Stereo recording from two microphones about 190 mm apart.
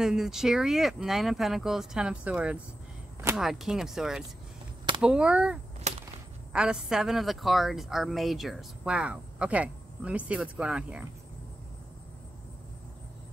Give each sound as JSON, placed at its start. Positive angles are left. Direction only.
{"t": 0.0, "sound": "a woman's voice", "side_deg": -5}
{"t": 5.9, "sound": "a sound", "side_deg": -35}
{"t": 6.5, "sound": "a woman's voice", "side_deg": -5}